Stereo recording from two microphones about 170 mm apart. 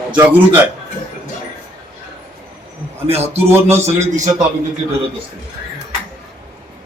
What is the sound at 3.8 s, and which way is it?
Speech, 45° right (ahead or behind).